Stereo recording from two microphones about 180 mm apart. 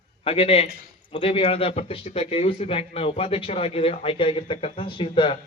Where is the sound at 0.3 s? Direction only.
30° left (ahead or behind).